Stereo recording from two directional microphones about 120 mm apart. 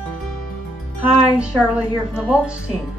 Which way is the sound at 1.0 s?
10° right (ahead or behind).